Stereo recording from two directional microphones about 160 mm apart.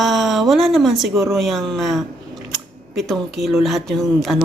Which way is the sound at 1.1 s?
20° right (ahead or behind).